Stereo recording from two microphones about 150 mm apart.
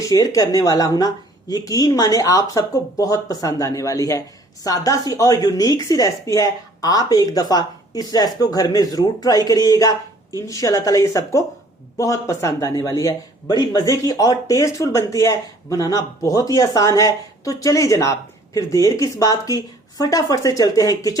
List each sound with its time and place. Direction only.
0.0 s speech: 25° left (ahead or behind)